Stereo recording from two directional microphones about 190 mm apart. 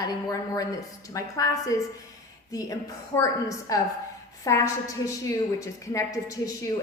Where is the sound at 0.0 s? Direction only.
20° left (ahead or behind).